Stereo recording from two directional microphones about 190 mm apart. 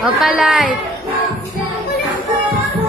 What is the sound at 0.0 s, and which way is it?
Speech, 5° right (ahead or behind).